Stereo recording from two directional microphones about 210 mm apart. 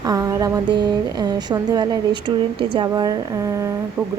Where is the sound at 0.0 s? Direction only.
15° right (ahead or behind).